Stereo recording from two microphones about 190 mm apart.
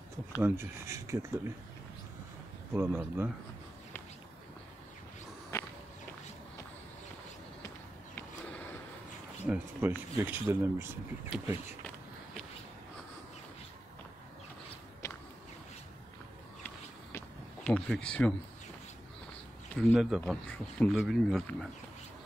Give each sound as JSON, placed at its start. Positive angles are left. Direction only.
{"t": 0.4, "sound": "speech", "side_deg": -15}
{"t": 2.7, "sound": "speech", "side_deg": -10}
{"t": 5.5, "sound": "walk", "side_deg": 15}
{"t": 8.2, "sound": "a sound", "side_deg": 10}
{"t": 9.5, "sound": "speech", "side_deg": -10}
{"t": 15.0, "sound": "a sound", "side_deg": 15}
{"t": 17.6, "sound": "speech", "side_deg": 5}
{"t": 19.9, "sound": "speech", "side_deg": -5}